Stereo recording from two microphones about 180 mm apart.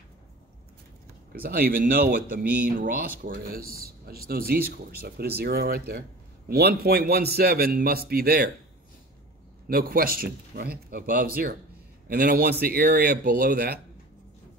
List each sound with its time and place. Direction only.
1.4 s speech: 55° right (ahead or behind)
9.7 s speech: 55° right (ahead or behind)